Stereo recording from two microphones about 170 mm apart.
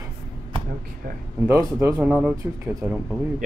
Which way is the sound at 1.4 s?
15° right (ahead or behind).